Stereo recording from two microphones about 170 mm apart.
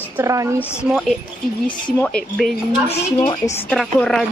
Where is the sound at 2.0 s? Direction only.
5° left (ahead or behind).